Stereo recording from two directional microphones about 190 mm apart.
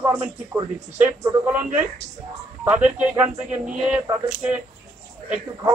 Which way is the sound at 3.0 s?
10° right (ahead or behind).